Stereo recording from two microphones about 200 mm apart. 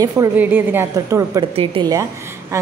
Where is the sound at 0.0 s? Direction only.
15° right (ahead or behind).